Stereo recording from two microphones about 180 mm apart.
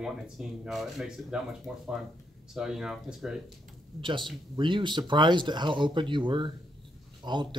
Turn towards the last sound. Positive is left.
turn(degrees=-25)  # may be behind; listen again after turning